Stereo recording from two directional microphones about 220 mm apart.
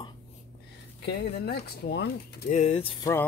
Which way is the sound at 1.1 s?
45° left (ahead or behind).